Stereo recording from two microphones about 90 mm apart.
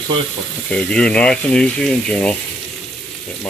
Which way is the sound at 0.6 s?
10° left (ahead or behind).